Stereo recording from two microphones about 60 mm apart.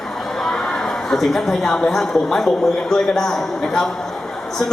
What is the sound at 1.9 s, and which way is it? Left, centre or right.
A man's voice, centre.